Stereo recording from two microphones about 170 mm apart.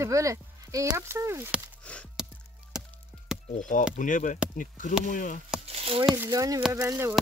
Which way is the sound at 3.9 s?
50° left (ahead or behind).